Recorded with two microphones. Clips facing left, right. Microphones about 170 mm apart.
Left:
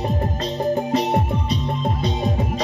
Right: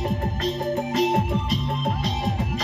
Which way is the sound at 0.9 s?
90° right.